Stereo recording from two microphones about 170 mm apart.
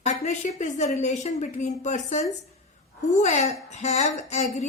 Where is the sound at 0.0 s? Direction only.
40° left (ahead or behind).